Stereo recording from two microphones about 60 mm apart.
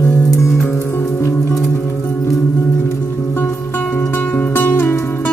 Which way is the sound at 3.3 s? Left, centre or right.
Left.